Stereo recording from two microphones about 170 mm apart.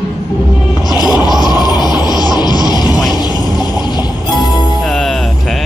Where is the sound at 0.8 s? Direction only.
25° left (ahead or behind).